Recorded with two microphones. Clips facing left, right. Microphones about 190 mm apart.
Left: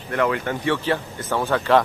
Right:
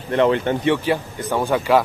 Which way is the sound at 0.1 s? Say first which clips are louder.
Right 5 dB; 25° right (ahead or behind).